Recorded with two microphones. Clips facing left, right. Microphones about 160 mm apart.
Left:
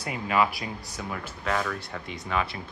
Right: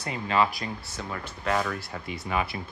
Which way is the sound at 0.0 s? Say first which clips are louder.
Even; 10° left (ahead or behind).